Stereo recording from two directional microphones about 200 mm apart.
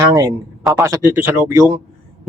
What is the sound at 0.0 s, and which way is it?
Speech, 20° right (ahead or behind).